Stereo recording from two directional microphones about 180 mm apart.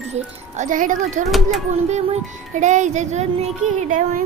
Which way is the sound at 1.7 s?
40° right (ahead or behind).